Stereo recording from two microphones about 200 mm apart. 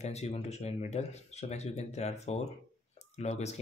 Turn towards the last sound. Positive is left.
turn(degrees=35)  # may be behind; listen again after turning